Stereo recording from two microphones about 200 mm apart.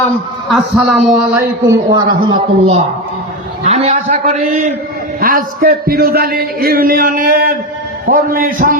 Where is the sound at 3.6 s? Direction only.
35° right (ahead or behind).